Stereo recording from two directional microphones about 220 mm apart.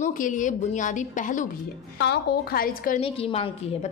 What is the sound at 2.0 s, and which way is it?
A woman's voice, 50° left (ahead or behind).